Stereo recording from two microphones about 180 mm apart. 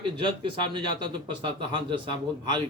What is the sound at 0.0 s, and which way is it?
Speech, 25° right (ahead or behind).